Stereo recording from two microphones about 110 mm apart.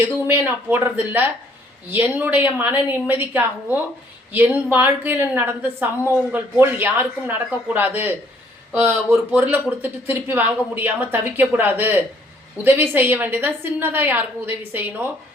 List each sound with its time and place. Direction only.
0.0 s a woman's voice: 15° right (ahead or behind)